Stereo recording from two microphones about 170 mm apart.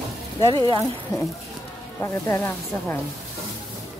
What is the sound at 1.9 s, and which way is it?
Speech, 15° left (ahead or behind).